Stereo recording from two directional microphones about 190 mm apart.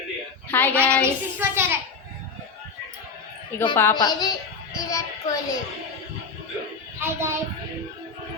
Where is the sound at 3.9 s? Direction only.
20° left (ahead or behind).